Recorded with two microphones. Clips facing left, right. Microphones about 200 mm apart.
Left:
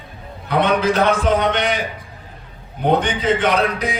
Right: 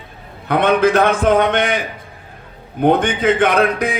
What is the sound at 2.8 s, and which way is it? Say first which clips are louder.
A man's voice: right 3 dB; 50° right (ahead or behind).